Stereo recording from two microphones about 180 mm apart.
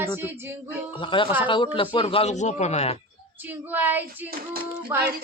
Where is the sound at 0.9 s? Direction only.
30° left (ahead or behind).